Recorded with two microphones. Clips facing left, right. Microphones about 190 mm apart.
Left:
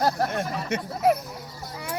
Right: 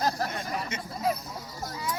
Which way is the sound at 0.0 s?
65° left (ahead or behind).